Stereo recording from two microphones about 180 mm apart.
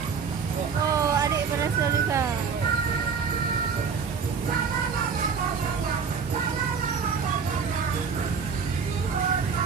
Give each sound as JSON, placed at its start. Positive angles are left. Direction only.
{"t": 0.9, "sound": "music", "side_deg": -20}